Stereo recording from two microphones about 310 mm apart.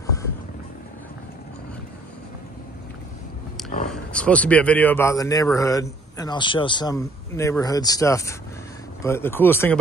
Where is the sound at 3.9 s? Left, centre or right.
Centre.